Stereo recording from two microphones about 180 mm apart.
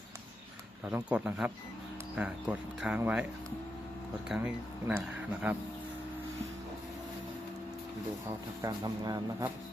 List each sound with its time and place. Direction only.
0.9 s speech: 10° right (ahead or behind)
4.3 s speech: 10° right (ahead or behind)
8.6 s speech: 20° right (ahead or behind)